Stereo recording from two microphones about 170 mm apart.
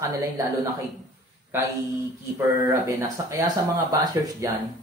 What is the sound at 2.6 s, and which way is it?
Speech, 20° right (ahead or behind).